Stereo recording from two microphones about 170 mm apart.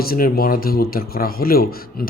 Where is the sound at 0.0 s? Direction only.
60° left (ahead or behind).